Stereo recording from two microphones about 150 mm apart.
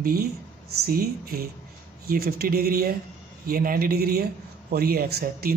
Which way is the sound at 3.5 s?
75° right (ahead or behind).